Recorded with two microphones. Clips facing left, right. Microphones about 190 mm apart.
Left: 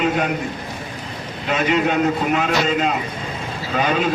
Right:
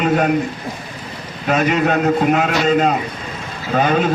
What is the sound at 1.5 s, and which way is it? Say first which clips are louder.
A man's voice: right 3 dB; 45° right (ahead or behind).